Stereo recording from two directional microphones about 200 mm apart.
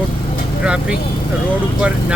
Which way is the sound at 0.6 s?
5° right (ahead or behind).